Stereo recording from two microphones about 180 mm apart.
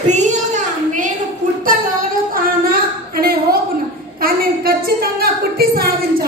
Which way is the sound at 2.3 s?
55° right (ahead or behind).